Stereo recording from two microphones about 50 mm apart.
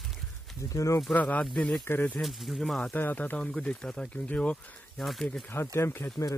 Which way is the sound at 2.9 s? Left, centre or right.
Left.